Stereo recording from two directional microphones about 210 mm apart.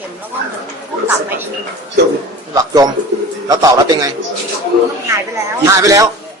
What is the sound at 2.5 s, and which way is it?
Bird, 20° right (ahead or behind).